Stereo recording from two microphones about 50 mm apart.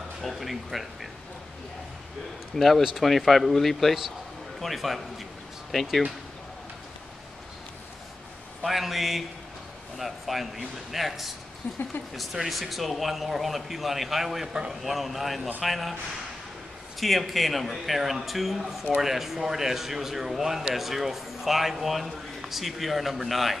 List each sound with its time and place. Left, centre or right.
0.2 s speech: centre
2.5 s a man's voice: centre
8.6 s a man's voice: centre
11.6 s speech: left
12.4 s a man's voice: centre
17.0 s a man's voice: centre